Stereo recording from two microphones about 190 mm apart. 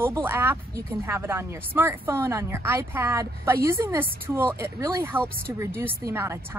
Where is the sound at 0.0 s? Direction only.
10° right (ahead or behind).